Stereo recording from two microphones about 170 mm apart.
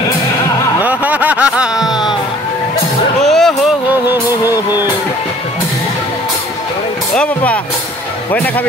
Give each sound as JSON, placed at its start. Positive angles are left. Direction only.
{"t": 0.7, "sound": "music", "side_deg": -10}
{"t": 1.9, "sound": "a sound", "side_deg": 25}
{"t": 3.3, "sound": "music", "side_deg": 0}
{"t": 4.5, "sound": "music", "side_deg": -10}
{"t": 7.2, "sound": "speech", "side_deg": 10}